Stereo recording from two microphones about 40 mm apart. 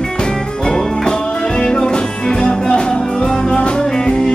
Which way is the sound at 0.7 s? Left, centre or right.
Centre.